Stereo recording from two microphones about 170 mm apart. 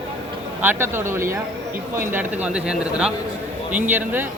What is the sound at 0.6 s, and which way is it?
A man's voice, 15° right (ahead or behind).